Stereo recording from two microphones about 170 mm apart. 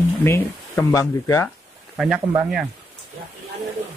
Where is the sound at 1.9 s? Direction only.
5° right (ahead or behind).